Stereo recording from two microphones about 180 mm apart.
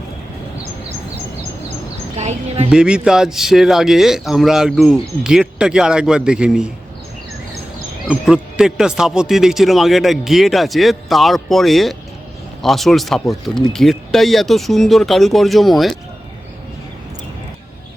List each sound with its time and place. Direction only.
2.1 s speech: 35° right (ahead or behind)
2.6 s a man's voice: 5° right (ahead or behind)
8.0 s a man's voice: 5° right (ahead or behind)